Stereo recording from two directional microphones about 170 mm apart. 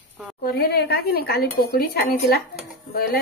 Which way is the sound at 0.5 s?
65° left (ahead or behind).